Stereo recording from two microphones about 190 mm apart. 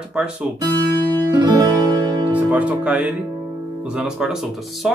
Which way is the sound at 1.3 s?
20° right (ahead or behind).